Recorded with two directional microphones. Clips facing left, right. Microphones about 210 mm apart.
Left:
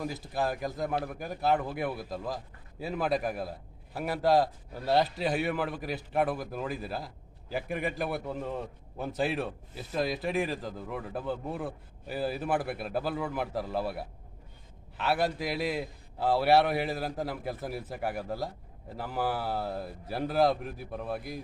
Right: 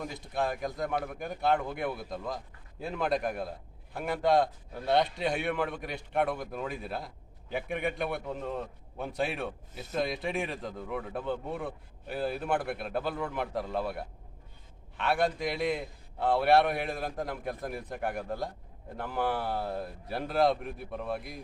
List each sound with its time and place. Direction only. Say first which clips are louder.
0.0 s a man's voice: left 1 dB; 5° left (ahead or behind)